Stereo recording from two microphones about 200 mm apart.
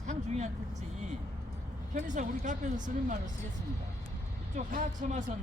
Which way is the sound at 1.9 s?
40° right (ahead or behind).